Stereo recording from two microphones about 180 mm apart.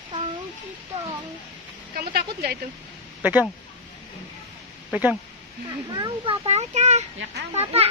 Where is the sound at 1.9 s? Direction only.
60° right (ahead or behind).